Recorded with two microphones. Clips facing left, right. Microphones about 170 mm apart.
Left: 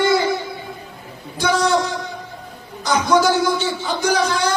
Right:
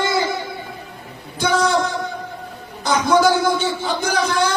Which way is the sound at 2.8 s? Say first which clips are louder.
Right 1 dB; 55° right (ahead or behind).